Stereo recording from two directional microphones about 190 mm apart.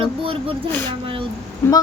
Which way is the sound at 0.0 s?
30° right (ahead or behind).